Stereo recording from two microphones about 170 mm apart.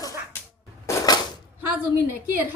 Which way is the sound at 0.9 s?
20° left (ahead or behind).